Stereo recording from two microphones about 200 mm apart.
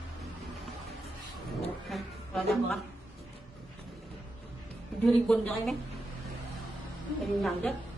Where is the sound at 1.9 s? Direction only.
Centre (ahead or behind).